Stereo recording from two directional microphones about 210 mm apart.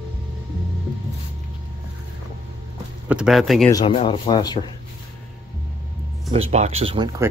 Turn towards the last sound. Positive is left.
turn(degrees=-25)  # may be behind; listen again after turning